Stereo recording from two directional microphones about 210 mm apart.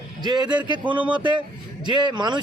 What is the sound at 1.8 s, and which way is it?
Speech, 20° right (ahead or behind).